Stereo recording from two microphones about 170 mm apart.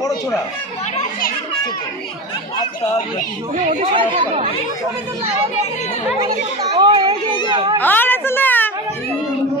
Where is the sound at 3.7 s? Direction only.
35° right (ahead or behind).